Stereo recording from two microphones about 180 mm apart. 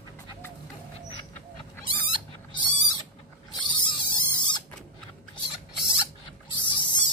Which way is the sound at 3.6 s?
25° left (ahead or behind).